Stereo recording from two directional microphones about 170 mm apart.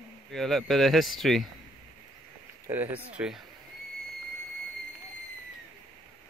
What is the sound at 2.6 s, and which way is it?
Speech, 10° right (ahead or behind).